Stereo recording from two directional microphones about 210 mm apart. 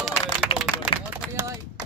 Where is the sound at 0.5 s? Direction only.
25° left (ahead or behind).